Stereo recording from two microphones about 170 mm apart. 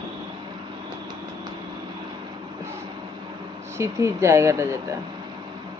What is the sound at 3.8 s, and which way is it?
Speech, 15° right (ahead or behind).